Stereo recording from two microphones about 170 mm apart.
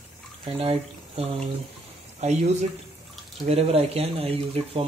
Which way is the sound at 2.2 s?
40° right (ahead or behind).